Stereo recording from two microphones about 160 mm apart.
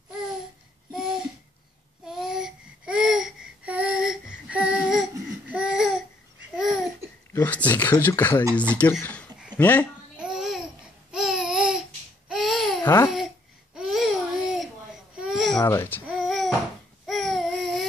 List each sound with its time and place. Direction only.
2.0 s babbling: 5° right (ahead or behind)
7.3 s speech: 10° left (ahead or behind)
10.1 s babbling: 5° right (ahead or behind)
12.8 s speech: 15° left (ahead or behind)
13.7 s babbling: centre (ahead or behind)
15.6 s speech: 15° left (ahead or behind)
16.1 s a sound: centre (ahead or behind)
17.0 s baby cry: centre (ahead or behind)